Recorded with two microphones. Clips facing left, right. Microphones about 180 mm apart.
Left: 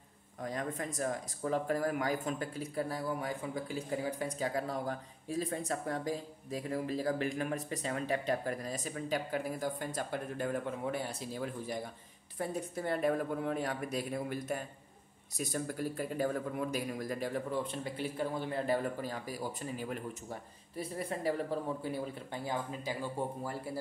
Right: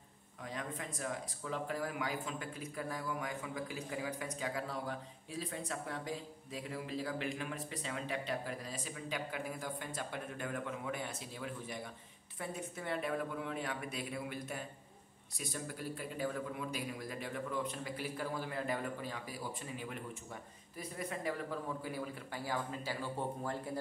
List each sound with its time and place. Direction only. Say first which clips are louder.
0.4 s a man's voice: left 6 dB; 45° left (ahead or behind); by 18.8 s 25° left (ahead or behind)
18.9 s a man's voice: left 5 dB; 40° left (ahead or behind); by 23.8 s 10° left (ahead or behind)